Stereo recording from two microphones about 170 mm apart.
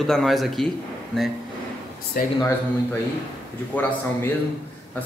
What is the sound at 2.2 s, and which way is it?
Speech, 65° left (ahead or behind).